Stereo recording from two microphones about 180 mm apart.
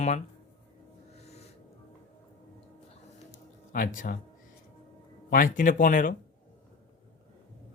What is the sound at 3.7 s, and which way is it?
Speech, 50° left (ahead or behind).